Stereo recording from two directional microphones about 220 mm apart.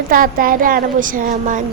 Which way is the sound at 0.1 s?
40° right (ahead or behind).